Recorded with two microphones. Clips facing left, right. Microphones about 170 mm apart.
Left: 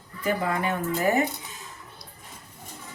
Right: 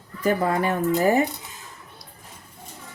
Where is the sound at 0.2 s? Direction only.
40° right (ahead or behind).